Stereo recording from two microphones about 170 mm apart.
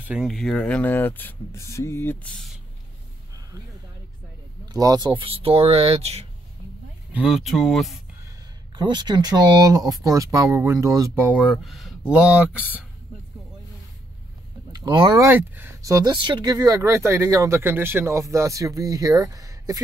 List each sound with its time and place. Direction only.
0.0 s speech: 5° right (ahead or behind)
4.7 s speech: 20° right (ahead or behind)
7.1 s speech: 5° right (ahead or behind)
8.7 s speech: 25° right (ahead or behind); by 12.4 s 5° right (ahead or behind)
14.7 s speech: 25° right (ahead or behind)